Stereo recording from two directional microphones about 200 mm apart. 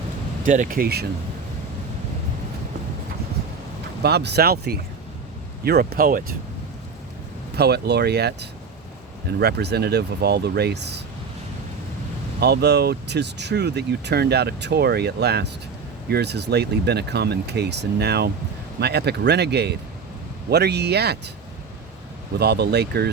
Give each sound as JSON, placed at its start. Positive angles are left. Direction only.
{"t": 0.4, "sound": "speech", "side_deg": -40}
{"t": 4.0, "sound": "speech", "side_deg": -55}
{"t": 7.5, "sound": "speech", "side_deg": -55}
{"t": 12.4, "sound": "speech", "side_deg": -55}
{"t": 22.4, "sound": "speech", "side_deg": -55}